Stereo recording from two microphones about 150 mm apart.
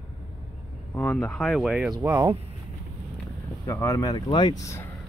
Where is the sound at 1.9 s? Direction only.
20° right (ahead or behind).